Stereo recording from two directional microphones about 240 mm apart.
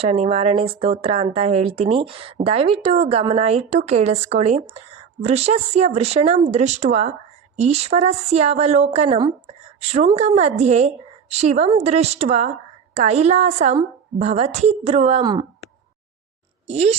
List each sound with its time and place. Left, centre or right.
0.0 s a woman's voice: right
16.6 s a woman's voice: right